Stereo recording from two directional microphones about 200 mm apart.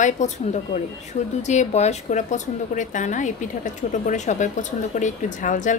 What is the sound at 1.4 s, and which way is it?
A woman's voice, 35° left (ahead or behind).